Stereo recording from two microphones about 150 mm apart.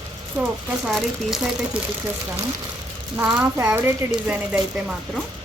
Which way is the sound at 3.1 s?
20° right (ahead or behind).